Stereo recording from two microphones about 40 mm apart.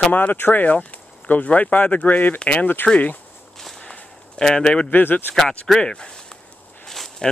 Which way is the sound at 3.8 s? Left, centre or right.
Centre.